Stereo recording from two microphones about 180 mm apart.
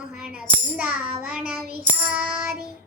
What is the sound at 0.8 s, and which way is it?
Child singing, 5° right (ahead or behind).